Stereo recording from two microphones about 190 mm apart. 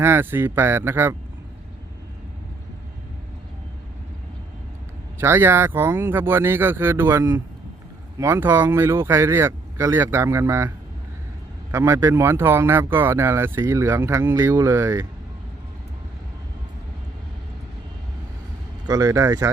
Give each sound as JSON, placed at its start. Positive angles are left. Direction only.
{"t": 0.0, "sound": "speech", "side_deg": -10}
{"t": 5.2, "sound": "speech", "side_deg": -10}
{"t": 11.7, "sound": "speech", "side_deg": -15}
{"t": 18.9, "sound": "speech", "side_deg": -20}